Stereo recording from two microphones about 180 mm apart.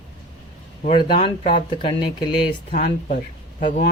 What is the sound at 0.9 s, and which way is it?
Speech, 25° left (ahead or behind).